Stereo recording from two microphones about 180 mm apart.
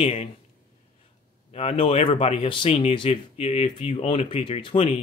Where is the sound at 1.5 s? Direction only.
30° left (ahead or behind).